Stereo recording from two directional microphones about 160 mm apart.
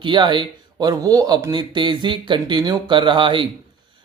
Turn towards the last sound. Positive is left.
turn(degrees=-30)  # may be behind; listen again after turning